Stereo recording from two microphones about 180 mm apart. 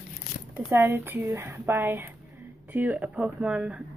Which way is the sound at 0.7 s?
15° right (ahead or behind).